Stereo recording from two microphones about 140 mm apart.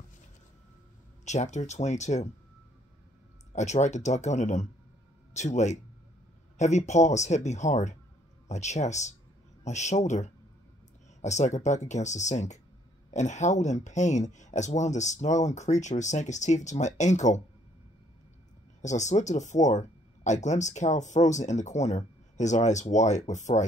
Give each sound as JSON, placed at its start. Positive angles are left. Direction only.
{"t": 1.2, "sound": "speech", "side_deg": 55}
{"t": 3.5, "sound": "speech", "side_deg": 55}
{"t": 18.8, "sound": "speech", "side_deg": 55}